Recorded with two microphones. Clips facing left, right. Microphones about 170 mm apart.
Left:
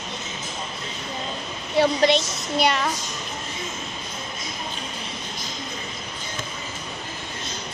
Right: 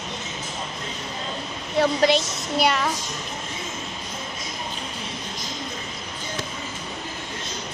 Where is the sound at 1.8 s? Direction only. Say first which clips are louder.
Even; 5° right (ahead or behind).